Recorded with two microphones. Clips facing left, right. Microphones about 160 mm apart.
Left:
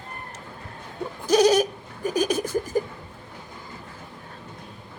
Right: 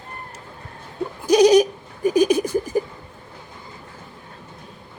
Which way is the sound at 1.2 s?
10° right (ahead or behind).